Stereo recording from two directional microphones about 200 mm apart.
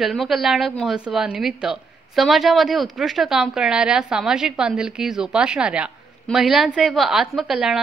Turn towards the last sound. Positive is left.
turn(degrees=-5)  # may be behind; listen again after turning